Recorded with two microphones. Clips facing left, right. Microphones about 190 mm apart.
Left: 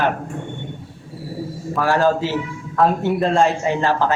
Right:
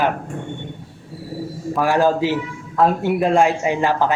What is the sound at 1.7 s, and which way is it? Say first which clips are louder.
Speech: right 1 dB; 15° right (ahead or behind).